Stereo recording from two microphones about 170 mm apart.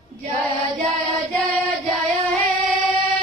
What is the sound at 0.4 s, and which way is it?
Music, centre (ahead or behind).